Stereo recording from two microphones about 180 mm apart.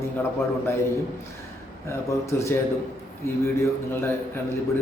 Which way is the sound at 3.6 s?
15° left (ahead or behind).